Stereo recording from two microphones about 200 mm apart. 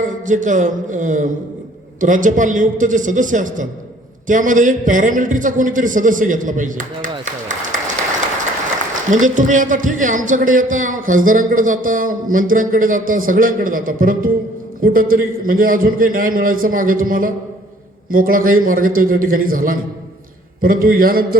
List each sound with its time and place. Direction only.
0.3 s a man's voice: 40° right (ahead or behind)
9.0 s a man's voice: 40° right (ahead or behind)